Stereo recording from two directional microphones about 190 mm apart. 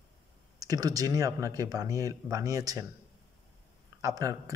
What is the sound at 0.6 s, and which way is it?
Speech, 20° right (ahead or behind).